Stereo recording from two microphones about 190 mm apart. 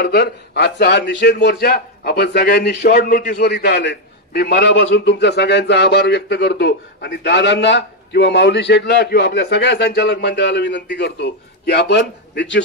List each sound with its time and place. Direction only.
0.0 s a man's voice: 55° left (ahead or behind)
3.0 s a man's voice: 45° left (ahead or behind); by 12.6 s 65° left (ahead or behind)